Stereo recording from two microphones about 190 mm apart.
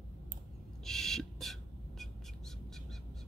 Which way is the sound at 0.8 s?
Centre (ahead or behind).